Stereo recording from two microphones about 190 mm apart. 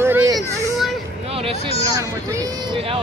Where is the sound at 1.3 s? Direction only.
30° right (ahead or behind).